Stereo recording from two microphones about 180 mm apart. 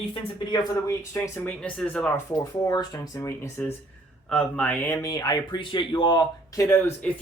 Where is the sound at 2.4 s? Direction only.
25° left (ahead or behind).